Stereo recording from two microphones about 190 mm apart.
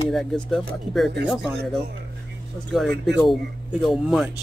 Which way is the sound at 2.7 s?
Centre (ahead or behind).